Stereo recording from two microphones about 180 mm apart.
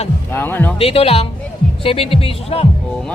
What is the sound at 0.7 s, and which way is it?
A man's voice, 30° left (ahead or behind).